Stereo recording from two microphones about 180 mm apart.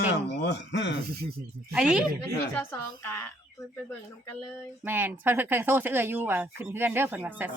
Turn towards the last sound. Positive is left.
turn(degrees=-10)  # may be behind; listen again after turning